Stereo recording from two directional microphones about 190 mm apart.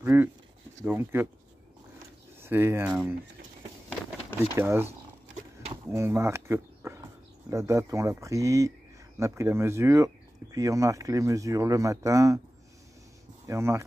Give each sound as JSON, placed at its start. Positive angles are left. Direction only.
{"t": 0.0, "sound": "speech", "side_deg": -10}
{"t": 2.4, "sound": "speech", "side_deg": -10}
{"t": 4.4, "sound": "speech", "side_deg": -10}
{"t": 5.9, "sound": "speech", "side_deg": -15}
{"t": 13.5, "sound": "speech", "side_deg": -15}